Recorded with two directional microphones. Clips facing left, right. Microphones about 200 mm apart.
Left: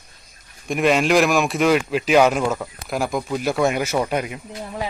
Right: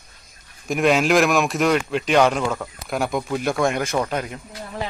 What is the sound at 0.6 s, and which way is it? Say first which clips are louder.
Speech: even; centre (ahead or behind).